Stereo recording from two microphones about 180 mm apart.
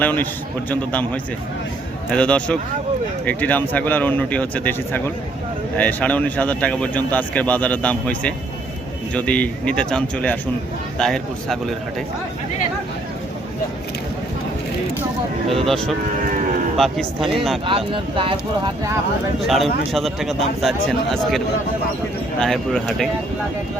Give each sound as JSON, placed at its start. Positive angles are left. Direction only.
{"t": 0.0, "sound": "a man's voice", "side_deg": 10}
{"t": 15.4, "sound": "a man's voice", "side_deg": 0}
{"t": 17.7, "sound": "speech", "side_deg": -30}
{"t": 19.5, "sound": "a man's voice", "side_deg": 0}